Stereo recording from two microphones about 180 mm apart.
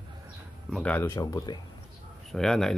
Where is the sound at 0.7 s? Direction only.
5° left (ahead or behind).